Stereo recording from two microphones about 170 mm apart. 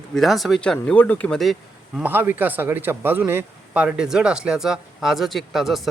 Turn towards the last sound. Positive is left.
turn(degrees=0)  # may be behind; listen again after turning